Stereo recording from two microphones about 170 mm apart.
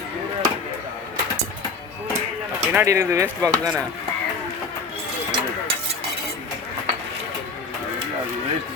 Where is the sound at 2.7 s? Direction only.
15° right (ahead or behind).